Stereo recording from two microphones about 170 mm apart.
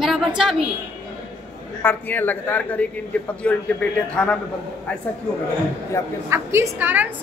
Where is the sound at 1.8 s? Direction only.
10° left (ahead or behind).